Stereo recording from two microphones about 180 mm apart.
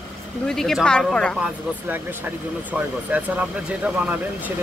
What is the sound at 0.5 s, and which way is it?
Speech, centre (ahead or behind).